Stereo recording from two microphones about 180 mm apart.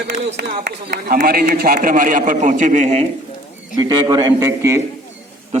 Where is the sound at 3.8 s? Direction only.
25° right (ahead or behind).